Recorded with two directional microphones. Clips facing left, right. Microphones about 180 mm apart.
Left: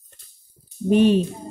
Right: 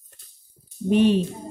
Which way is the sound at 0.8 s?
45° left (ahead or behind).